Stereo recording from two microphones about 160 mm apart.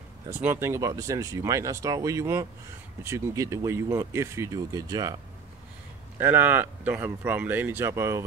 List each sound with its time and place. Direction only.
0.3 s speech: 15° right (ahead or behind)
6.1 s speech: 10° right (ahead or behind)